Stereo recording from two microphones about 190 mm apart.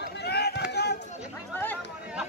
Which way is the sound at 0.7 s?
60° left (ahead or behind).